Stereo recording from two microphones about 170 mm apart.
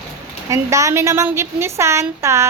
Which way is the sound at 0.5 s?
20° right (ahead or behind).